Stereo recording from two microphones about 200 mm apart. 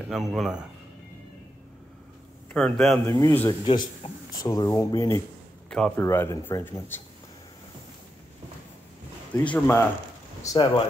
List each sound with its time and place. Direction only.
0.1 s speech: centre (ahead or behind)
2.5 s speech: centre (ahead or behind)
3.1 s speech: 15° left (ahead or behind)
5.7 s speech: 5° left (ahead or behind)
9.4 s speech: 10° left (ahead or behind)